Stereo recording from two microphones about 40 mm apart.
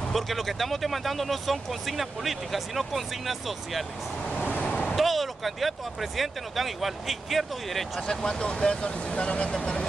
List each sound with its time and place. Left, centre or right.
0.1 s speech: centre
4.4 s vehicle: left
4.9 s speech: centre
8.1 s speech: centre